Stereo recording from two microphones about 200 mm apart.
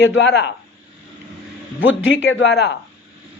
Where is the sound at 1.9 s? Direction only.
70° left (ahead or behind).